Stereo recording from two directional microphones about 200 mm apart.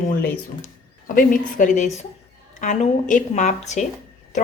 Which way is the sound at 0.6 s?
45° left (ahead or behind).